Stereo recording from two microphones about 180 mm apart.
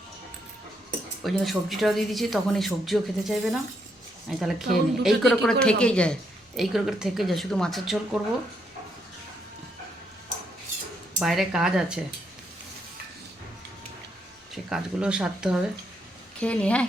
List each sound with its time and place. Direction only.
1.2 s a woman's voice: centre (ahead or behind)
11.2 s a woman's voice: centre (ahead or behind)
14.5 s a woman's voice: 5° right (ahead or behind)
16.4 s a woman's voice: 5° left (ahead or behind)